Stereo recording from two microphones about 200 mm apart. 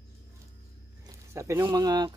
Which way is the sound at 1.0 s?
15° right (ahead or behind).